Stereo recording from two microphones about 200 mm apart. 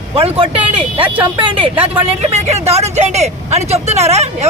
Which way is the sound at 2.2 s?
30° right (ahead or behind).